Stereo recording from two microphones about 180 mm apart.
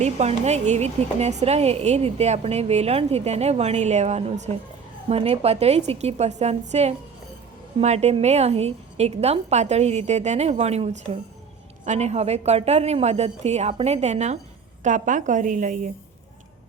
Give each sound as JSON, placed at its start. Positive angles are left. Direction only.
{"t": 0.0, "sound": "a woman's voice", "side_deg": -35}